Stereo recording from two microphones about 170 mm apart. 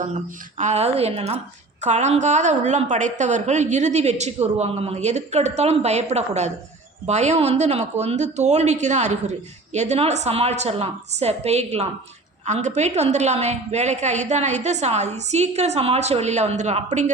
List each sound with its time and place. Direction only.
0.6 s a woman's voice: 40° right (ahead or behind)